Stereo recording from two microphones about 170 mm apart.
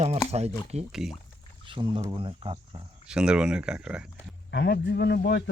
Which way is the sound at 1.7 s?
30° right (ahead or behind).